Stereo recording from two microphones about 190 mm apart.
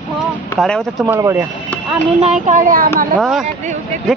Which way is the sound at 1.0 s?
15° right (ahead or behind).